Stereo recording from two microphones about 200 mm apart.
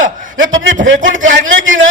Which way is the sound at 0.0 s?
75° right (ahead or behind).